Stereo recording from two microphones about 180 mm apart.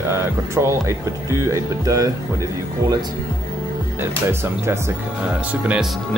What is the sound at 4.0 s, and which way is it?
Speech, 15° right (ahead or behind).